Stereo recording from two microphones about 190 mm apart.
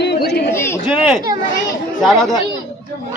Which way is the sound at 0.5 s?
15° left (ahead or behind).